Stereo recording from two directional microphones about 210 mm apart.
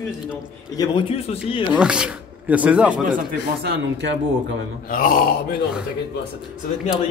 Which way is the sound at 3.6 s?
55° right (ahead or behind).